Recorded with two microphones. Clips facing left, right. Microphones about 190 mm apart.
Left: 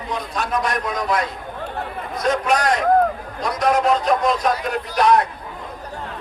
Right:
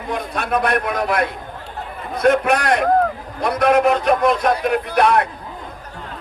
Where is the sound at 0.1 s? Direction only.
60° right (ahead or behind).